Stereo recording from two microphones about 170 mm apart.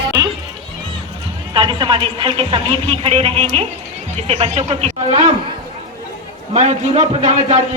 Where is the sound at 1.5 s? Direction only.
30° right (ahead or behind).